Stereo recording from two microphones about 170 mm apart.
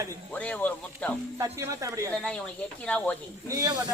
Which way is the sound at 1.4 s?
15° right (ahead or behind).